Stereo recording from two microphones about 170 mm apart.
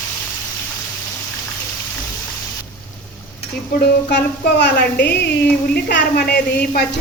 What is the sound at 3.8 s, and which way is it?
Music, 80° left.